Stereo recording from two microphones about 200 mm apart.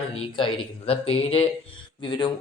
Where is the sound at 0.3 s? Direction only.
25° left (ahead or behind).